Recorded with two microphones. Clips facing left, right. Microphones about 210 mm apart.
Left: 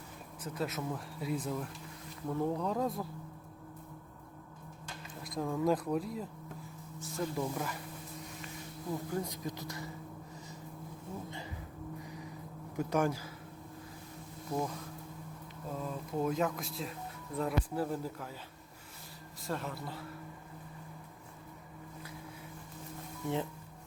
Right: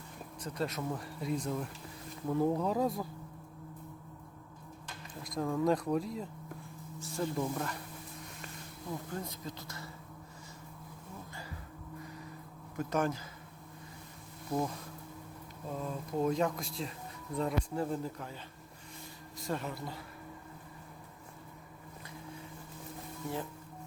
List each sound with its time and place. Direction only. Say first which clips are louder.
0.4 s speech: right 1 dB; 5° left (ahead or behind)
5.2 s speech: right 1 dB; centre (ahead or behind)
9.2 s speech: left 3 dB; 15° left (ahead or behind)
11.3 s a sound: left 4 dB; 20° left (ahead or behind)
12.7 s speech: left 1 dB; 10° left (ahead or behind)
15.8 s speech: right 2 dB; centre (ahead or behind)
19.4 s speech: right 1 dB; centre (ahead or behind)
23.2 s speech: left 4 dB; 20° left (ahead or behind)